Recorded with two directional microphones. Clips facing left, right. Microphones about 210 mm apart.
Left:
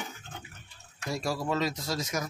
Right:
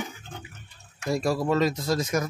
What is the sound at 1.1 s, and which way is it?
Speech, 55° right (ahead or behind).